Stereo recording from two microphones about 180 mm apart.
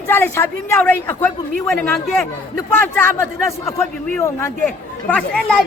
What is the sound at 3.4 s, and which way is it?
A man's voice, 15° left (ahead or behind).